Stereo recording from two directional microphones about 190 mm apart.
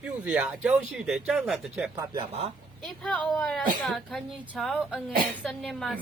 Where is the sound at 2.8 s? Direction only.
5° left (ahead or behind).